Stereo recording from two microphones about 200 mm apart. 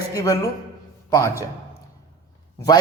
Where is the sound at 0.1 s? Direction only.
20° left (ahead or behind).